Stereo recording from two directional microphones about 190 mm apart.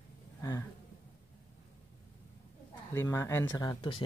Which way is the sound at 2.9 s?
15° left (ahead or behind).